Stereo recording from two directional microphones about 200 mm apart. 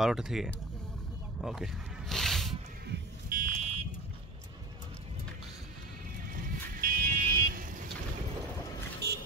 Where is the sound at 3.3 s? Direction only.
45° right (ahead or behind).